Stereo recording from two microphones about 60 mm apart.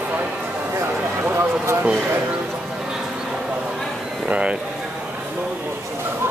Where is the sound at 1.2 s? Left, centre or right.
Right.